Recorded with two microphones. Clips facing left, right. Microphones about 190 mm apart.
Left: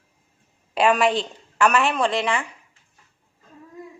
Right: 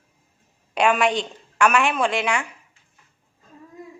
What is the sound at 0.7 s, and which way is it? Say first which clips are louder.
A woman's voice: left 1 dB; centre (ahead or behind).